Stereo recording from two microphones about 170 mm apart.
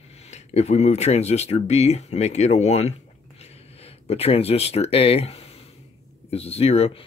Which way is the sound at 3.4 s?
35° left (ahead or behind).